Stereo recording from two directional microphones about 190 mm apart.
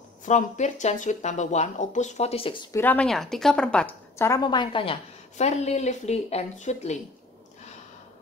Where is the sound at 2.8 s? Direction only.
10° left (ahead or behind); by 6.9 s 35° left (ahead or behind).